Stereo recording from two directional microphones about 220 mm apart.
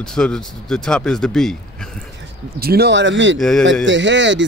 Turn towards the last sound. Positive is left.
turn(degrees=-55)  # may be behind; listen again after turning